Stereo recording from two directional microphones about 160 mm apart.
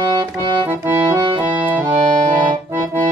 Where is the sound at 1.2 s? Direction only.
30° right (ahead or behind).